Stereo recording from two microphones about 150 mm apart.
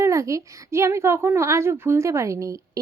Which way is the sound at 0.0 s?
20° right (ahead or behind).